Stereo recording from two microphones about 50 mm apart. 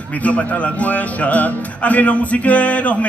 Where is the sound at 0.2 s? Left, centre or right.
Left.